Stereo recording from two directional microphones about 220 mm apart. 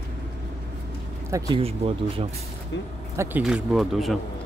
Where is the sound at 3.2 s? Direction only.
5° right (ahead or behind).